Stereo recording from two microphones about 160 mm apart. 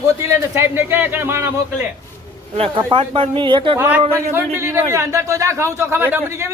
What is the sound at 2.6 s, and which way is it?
Speech, 35° right (ahead or behind).